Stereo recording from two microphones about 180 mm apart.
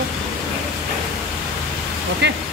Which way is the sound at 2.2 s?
75° right (ahead or behind).